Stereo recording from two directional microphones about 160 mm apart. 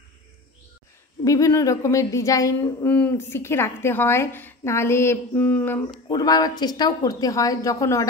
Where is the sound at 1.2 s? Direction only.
20° left (ahead or behind).